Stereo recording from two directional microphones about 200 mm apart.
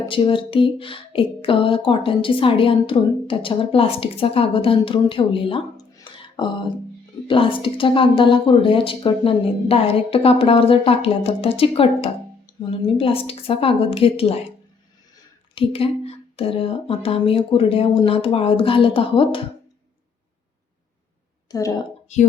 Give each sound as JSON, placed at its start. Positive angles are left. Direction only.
{"t": 0.1, "sound": "speech", "side_deg": 25}
{"t": 15.5, "sound": "speech", "side_deg": 30}
{"t": 21.5, "sound": "a woman's voice", "side_deg": 20}
{"t": 22.1, "sound": "speech", "side_deg": 35}